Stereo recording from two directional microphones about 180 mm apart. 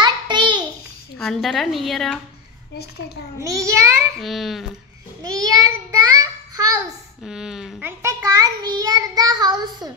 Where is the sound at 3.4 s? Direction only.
15° right (ahead or behind).